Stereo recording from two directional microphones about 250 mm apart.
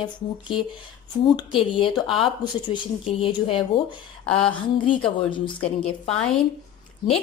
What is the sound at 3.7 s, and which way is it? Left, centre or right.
Speech, centre.